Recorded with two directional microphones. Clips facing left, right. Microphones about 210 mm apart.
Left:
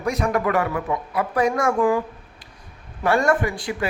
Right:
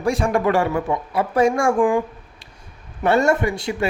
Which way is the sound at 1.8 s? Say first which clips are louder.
Right 2 dB; 20° right (ahead or behind).